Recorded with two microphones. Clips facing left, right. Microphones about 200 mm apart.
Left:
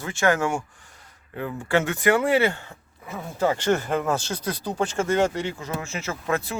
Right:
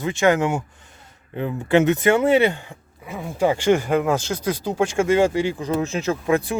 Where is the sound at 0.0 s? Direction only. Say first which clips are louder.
Right 4 dB; 20° right (ahead or behind).